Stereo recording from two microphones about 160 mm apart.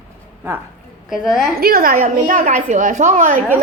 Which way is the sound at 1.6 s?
65° right (ahead or behind).